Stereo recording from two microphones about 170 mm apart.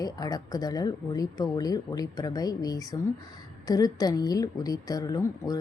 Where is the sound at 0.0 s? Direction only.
20° left (ahead or behind).